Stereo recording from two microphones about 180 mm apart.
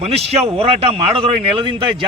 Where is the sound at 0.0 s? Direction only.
35° right (ahead or behind).